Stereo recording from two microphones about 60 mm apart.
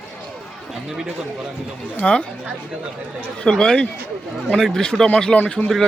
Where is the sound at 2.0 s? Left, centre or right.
Centre.